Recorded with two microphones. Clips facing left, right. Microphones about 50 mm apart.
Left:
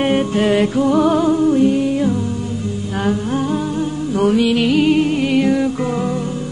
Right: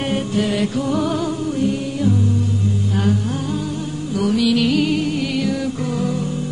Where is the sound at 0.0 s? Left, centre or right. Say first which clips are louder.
Left 5 dB; left.